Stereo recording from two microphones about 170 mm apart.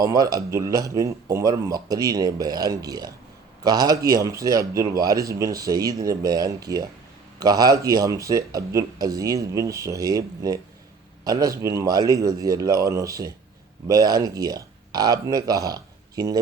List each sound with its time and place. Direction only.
0.0 s speech: 20° right (ahead or behind)